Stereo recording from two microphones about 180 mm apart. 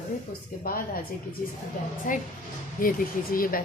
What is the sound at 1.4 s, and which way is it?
Speech, 45° left (ahead or behind).